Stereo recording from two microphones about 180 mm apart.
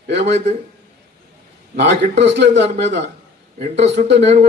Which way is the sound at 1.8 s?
70° right (ahead or behind).